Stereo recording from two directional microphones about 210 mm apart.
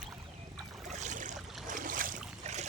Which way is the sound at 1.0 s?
35° right (ahead or behind).